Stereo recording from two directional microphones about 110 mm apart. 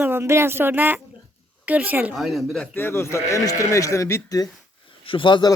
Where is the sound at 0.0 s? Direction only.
20° right (ahead or behind).